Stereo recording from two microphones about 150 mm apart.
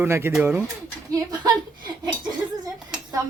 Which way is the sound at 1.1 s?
25° right (ahead or behind).